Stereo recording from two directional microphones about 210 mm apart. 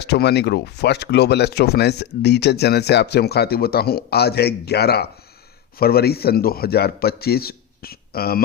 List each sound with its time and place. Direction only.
0.0 s speech: 50° left (ahead or behind)